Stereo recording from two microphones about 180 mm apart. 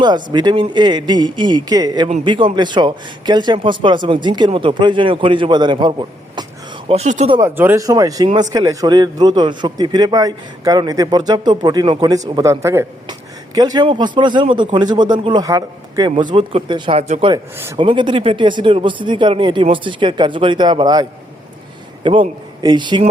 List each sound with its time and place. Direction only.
0.0 s a man's voice: 25° right (ahead or behind)
6.8 s speech: 35° right (ahead or behind)
7.3 s a man's voice: 15° right (ahead or behind)